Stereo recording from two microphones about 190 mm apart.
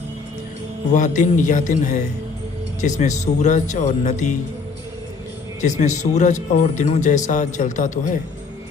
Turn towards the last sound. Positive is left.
turn(degrees=40)  # may be behind; listen again after turning